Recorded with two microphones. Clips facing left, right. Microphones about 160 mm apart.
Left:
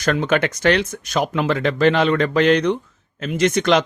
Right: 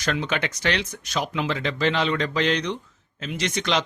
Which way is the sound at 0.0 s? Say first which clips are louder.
Left 7 dB; 50° left (ahead or behind).